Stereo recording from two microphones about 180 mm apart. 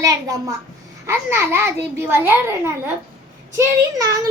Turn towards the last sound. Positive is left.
turn(degrees=-20)  # may be behind; listen again after turning